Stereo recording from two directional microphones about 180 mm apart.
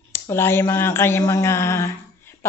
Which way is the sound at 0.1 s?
15° left (ahead or behind).